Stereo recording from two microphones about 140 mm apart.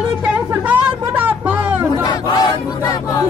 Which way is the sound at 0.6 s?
10° right (ahead or behind).